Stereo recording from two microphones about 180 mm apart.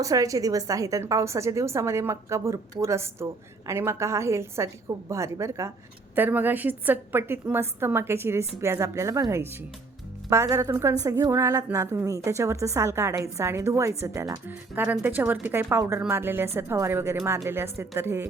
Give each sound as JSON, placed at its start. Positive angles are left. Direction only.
{"t": 0.0, "sound": "a woman's voice", "side_deg": -20}